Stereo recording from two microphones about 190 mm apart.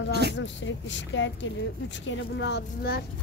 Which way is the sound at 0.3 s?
75° left (ahead or behind).